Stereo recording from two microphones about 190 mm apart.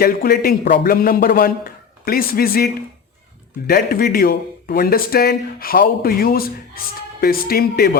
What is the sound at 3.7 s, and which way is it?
Speech, 50° left (ahead or behind).